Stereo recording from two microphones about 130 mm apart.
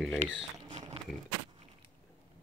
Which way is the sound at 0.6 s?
35° right (ahead or behind).